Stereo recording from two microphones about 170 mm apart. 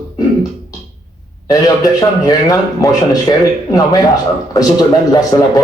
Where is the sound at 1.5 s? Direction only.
20° left (ahead or behind).